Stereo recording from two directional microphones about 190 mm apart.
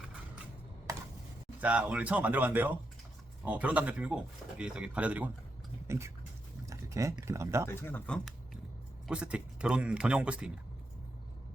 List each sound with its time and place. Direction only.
1.6 s speech: 5° right (ahead or behind)
6.7 s speech: 15° right (ahead or behind)
7.7 s speech: 10° left (ahead or behind)
9.0 s speech: 5° right (ahead or behind)